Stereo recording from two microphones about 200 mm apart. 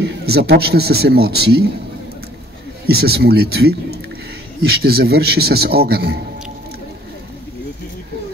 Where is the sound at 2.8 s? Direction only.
50° right (ahead or behind).